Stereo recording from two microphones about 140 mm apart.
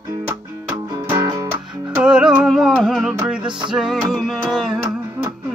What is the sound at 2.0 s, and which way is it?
Music, 5° right (ahead or behind).